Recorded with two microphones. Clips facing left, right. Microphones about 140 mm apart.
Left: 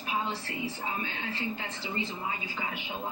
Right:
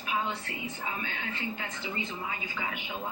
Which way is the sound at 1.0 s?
35° left (ahead or behind).